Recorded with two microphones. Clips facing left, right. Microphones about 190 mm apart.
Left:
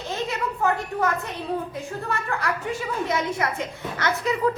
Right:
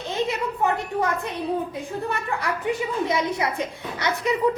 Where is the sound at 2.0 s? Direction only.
15° right (ahead or behind).